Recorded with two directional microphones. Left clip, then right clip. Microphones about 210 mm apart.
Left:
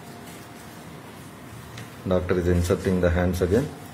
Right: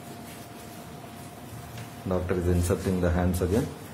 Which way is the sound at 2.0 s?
5° left (ahead or behind).